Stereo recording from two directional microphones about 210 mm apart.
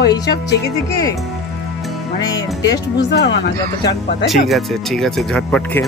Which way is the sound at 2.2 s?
15° left (ahead or behind).